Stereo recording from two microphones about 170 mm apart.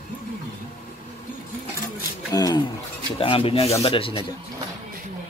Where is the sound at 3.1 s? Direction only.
30° left (ahead or behind).